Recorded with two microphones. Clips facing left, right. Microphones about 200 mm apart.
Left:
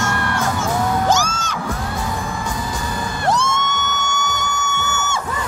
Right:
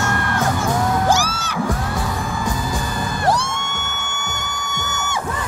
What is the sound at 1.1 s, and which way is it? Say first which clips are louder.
Music: even; 15° right (ahead or behind).